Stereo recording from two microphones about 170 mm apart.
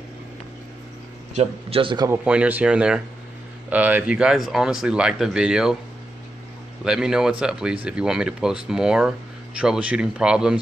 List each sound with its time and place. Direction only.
1.3 s a man's voice: 35° right (ahead or behind)
2.0 s speech: 10° right (ahead or behind)
6.8 s speech: 5° right (ahead or behind)